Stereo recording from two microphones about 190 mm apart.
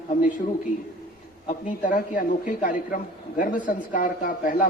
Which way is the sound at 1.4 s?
45° left (ahead or behind).